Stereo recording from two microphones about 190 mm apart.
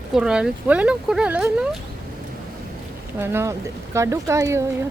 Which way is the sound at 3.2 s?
10° right (ahead or behind).